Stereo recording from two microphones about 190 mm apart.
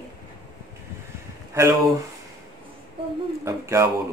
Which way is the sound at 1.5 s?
15° right (ahead or behind).